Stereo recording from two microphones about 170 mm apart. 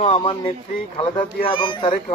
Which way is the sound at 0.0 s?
35° left (ahead or behind).